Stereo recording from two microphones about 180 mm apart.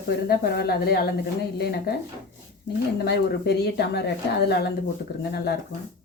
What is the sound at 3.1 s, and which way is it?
A woman's voice, 65° left (ahead or behind).